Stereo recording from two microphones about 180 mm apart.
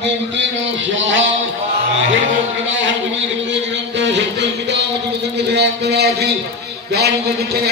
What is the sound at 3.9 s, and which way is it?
A man's voice, 75° right (ahead or behind).